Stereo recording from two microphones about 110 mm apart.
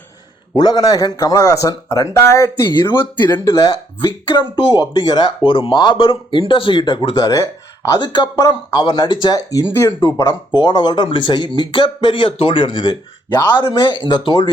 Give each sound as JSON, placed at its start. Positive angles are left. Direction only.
{"t": 0.5, "sound": "speech", "side_deg": 40}
{"t": 2.7, "sound": "a man's voice", "side_deg": 45}
{"t": 3.4, "sound": "speech", "side_deg": 30}
{"t": 3.7, "sound": "a man's voice", "side_deg": 50}
{"t": 7.3, "sound": "speech", "side_deg": 30}
{"t": 7.9, "sound": "speech", "side_deg": 45}
{"t": 10.5, "sound": "a man's voice", "side_deg": 45}